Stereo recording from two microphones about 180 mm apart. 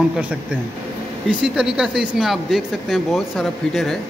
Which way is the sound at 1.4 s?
5° right (ahead or behind).